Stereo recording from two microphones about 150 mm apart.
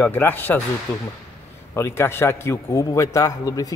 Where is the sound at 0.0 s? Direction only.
15° left (ahead or behind).